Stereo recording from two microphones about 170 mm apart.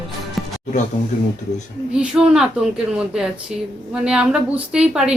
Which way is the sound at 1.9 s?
5° right (ahead or behind).